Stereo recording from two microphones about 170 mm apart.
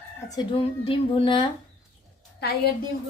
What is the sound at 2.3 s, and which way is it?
Speech, 70° left (ahead or behind).